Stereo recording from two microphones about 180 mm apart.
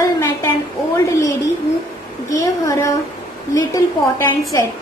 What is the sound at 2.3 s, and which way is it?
A woman's voice, 20° left (ahead or behind).